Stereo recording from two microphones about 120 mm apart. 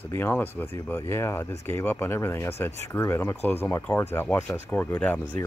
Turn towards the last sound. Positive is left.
turn(degrees=15)  # may be behind; listen again after turning